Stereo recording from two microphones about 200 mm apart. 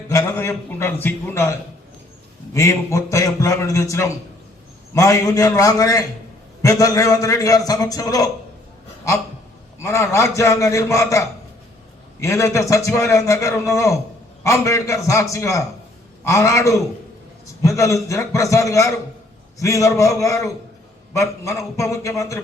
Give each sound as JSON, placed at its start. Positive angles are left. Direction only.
{"t": 0.1, "sound": "a man's voice", "side_deg": 15}
{"t": 9.8, "sound": "a man's voice", "side_deg": 15}
{"t": 12.2, "sound": "a man's voice", "side_deg": 15}